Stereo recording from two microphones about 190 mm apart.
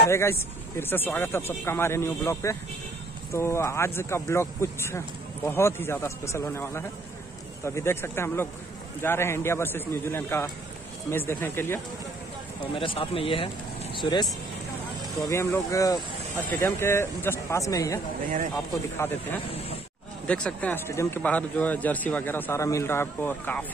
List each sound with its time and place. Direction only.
0.1 s speech: 15° left (ahead or behind)
12.7 s speech: 30° left (ahead or behind)
15.2 s speech: 15° left (ahead or behind)